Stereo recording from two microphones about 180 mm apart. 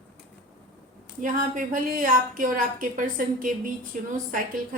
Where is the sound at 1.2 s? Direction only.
50° right (ahead or behind).